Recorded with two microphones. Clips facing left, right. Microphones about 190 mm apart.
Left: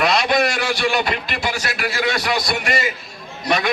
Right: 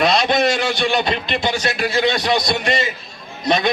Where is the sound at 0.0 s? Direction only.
20° right (ahead or behind).